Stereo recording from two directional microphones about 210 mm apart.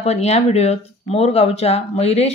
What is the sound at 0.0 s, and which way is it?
Speech, 30° left (ahead or behind).